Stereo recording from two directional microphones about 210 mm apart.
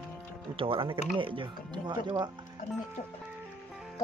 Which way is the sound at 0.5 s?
25° right (ahead or behind).